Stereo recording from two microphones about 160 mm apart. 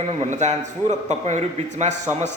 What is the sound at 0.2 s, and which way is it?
A man's voice, 45° right (ahead or behind).